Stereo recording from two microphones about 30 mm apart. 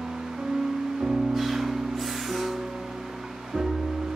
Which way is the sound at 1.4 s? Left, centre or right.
Centre.